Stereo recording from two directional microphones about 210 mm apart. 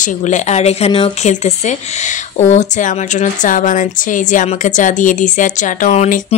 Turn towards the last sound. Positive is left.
turn(degrees=35)  # may be behind; listen again after turning